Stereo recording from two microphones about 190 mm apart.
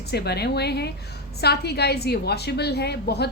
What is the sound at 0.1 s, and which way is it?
A woman's voice, 60° left (ahead or behind).